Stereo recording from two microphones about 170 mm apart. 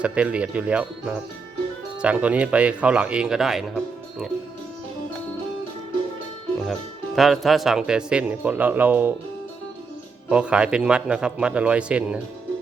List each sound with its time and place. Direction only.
0.0 s speech: 5° right (ahead or behind)
7.2 s speech: centre (ahead or behind)
10.2 s a man's voice: 5° right (ahead or behind)